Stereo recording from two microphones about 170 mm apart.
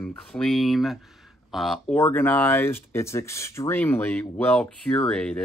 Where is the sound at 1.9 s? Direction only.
10° left (ahead or behind).